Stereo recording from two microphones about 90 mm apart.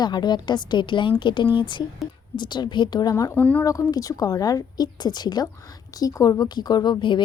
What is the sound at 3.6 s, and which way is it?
A woman's voice, 40° left (ahead or behind).